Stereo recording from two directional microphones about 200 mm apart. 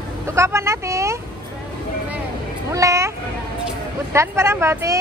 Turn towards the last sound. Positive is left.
turn(degrees=-15)  # may be behind; listen again after turning